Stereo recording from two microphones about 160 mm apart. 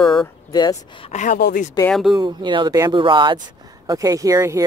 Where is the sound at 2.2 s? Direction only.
30° right (ahead or behind).